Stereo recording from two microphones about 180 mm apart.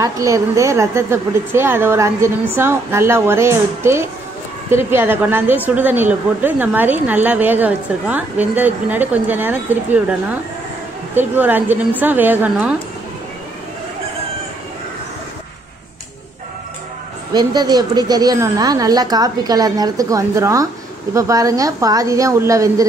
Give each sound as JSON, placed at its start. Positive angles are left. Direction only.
{"t": 0.0, "sound": "a woman's voice", "side_deg": -20}
{"t": 11.1, "sound": "a woman's voice", "side_deg": -10}
{"t": 17.3, "sound": "a woman's voice", "side_deg": -20}